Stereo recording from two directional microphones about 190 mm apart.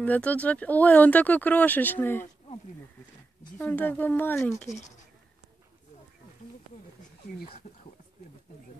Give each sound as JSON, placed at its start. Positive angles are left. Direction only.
{"t": 0.0, "sound": "speech", "side_deg": 10}
{"t": 3.5, "sound": "speech", "side_deg": 10}
{"t": 4.6, "sound": "speech", "side_deg": 40}